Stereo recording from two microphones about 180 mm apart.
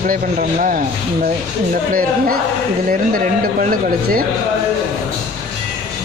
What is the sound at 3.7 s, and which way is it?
Speech, 50° right (ahead or behind).